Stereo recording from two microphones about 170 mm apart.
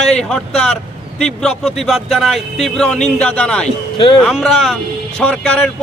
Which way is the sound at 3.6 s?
30° left (ahead or behind).